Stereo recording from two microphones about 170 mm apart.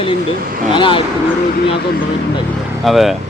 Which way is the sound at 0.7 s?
30° left (ahead or behind).